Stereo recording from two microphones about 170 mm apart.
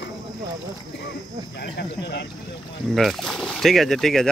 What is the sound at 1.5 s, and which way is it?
Speech, 75° left (ahead or behind).